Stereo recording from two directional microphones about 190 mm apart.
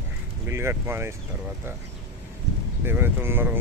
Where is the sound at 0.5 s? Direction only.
15° right (ahead or behind).